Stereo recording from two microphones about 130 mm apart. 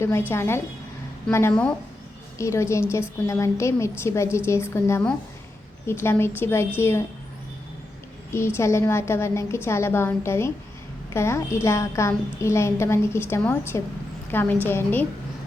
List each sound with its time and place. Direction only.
0.0 s a woman's voice: 20° left (ahead or behind)
8.3 s a woman's voice: 20° left (ahead or behind)